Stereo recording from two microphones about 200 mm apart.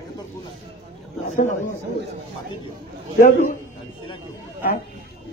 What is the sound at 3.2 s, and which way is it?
Speech, 45° left (ahead or behind).